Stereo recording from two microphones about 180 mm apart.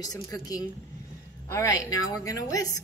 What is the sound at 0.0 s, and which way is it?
A woman's voice, 20° left (ahead or behind).